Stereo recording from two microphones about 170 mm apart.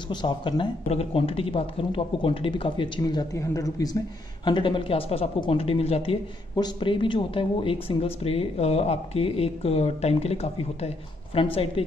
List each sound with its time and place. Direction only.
0.1 s speech: 25° left (ahead or behind)